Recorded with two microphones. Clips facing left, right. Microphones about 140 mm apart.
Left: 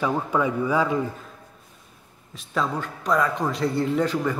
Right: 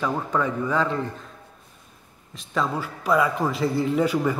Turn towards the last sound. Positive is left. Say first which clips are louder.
# right 1 dB
turn(degrees=-10)  # may be behind; listen again after turning